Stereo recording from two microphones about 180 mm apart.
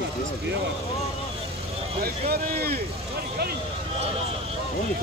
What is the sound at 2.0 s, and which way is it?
Speech, 60° right (ahead or behind).